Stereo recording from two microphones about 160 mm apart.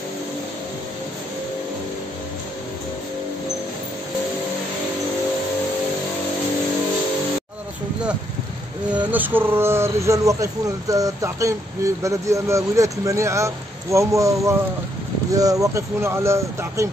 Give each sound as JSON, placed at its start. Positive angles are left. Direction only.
{"t": 9.1, "sound": "speech", "side_deg": -10}